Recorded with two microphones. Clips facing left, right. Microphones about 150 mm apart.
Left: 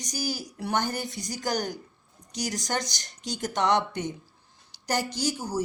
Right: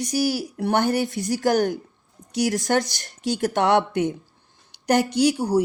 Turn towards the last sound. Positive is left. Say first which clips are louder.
# right 10 dB
turn(degrees=-65)  # may be behind; listen again after turning